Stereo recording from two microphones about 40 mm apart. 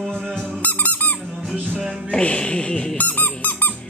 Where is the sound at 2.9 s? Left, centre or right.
Left.